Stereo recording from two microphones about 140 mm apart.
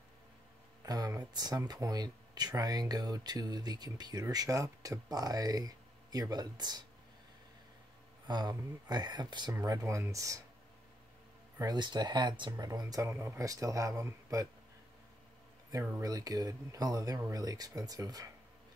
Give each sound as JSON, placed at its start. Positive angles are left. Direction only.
{"t": 0.8, "sound": "speech", "side_deg": -30}
{"t": 8.3, "sound": "speech", "side_deg": -30}
{"t": 11.5, "sound": "speech", "side_deg": -30}
{"t": 16.0, "sound": "speech", "side_deg": -25}